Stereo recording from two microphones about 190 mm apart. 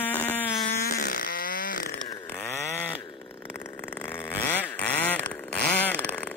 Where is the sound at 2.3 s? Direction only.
10° left (ahead or behind).